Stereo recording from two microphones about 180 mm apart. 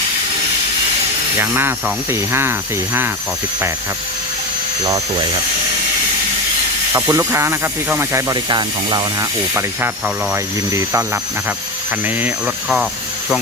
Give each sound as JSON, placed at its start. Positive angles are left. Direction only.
{"t": 1.4, "sound": "speech", "side_deg": -10}
{"t": 6.9, "sound": "speech", "side_deg": -15}
{"t": 10.3, "sound": "speech", "side_deg": -15}